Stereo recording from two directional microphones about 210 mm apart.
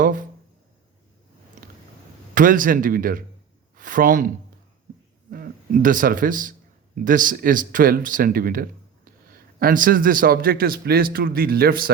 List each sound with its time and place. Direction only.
0.0 s speech: 40° right (ahead or behind)
2.3 s speech: 40° right (ahead or behind)
5.3 s a man's voice: 40° right (ahead or behind)